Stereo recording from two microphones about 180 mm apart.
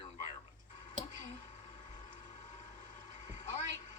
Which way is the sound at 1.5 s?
40° left (ahead or behind).